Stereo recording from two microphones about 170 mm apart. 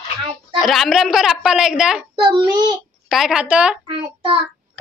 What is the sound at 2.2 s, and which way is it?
Child singing, 25° right (ahead or behind).